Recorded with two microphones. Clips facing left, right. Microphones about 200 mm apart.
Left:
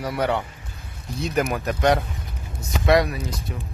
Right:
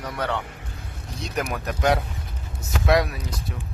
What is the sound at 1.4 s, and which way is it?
Speech, centre (ahead or behind).